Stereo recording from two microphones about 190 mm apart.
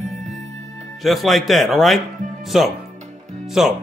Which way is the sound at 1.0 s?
Centre (ahead or behind).